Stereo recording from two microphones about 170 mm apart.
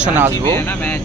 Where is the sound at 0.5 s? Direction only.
10° left (ahead or behind).